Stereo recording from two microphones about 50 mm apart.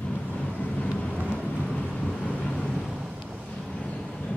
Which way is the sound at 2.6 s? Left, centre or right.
Centre.